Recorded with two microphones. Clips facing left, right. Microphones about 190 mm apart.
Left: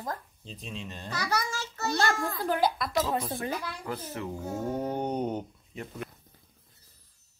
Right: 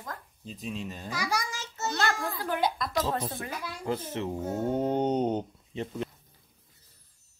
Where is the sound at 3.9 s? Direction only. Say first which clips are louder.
Right 5 dB; 25° right (ahead or behind).